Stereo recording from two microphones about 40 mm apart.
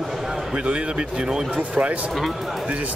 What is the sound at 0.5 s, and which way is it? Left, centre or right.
Speech, right.